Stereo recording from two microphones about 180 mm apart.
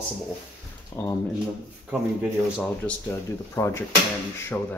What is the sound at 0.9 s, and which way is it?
Speech, 15° left (ahead or behind).